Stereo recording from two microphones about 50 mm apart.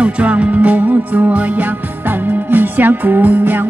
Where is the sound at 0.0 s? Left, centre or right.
Right.